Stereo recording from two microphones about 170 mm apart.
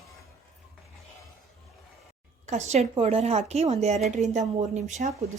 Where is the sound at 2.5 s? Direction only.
40° right (ahead or behind).